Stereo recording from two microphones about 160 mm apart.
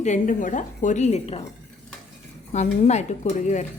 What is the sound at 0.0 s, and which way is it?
Speech, 50° left (ahead or behind).